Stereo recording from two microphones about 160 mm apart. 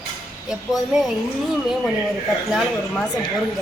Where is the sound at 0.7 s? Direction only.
5° right (ahead or behind).